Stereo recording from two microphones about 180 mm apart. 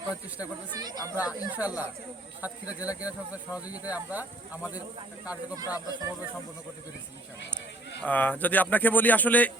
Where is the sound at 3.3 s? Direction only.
10° right (ahead or behind).